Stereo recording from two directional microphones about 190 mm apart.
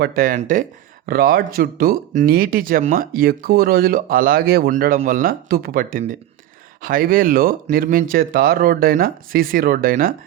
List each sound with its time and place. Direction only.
0.0 s speech: 50° right (ahead or behind)